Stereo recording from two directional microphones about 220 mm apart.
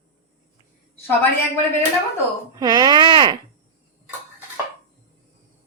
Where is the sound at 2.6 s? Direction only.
20° right (ahead or behind).